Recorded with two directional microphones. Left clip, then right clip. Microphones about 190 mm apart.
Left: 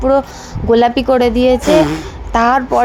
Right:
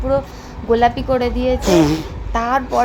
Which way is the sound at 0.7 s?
30° left (ahead or behind).